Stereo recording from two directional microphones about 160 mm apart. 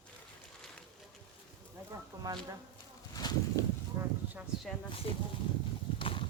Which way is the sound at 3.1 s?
25° left (ahead or behind).